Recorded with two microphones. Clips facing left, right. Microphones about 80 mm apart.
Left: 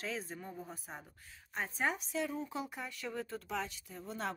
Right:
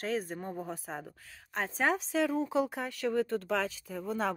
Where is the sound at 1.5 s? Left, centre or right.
Right.